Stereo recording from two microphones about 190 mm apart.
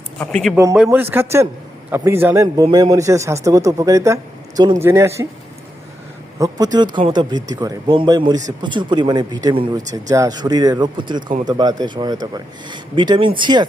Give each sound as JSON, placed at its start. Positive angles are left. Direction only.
{"t": 0.2, "sound": "a man's voice", "side_deg": 5}
{"t": 0.5, "sound": "a man's voice", "side_deg": -15}
{"t": 6.4, "sound": "speech", "side_deg": -20}